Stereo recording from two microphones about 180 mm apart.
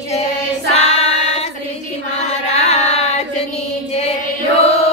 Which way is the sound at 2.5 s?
40° left (ahead or behind).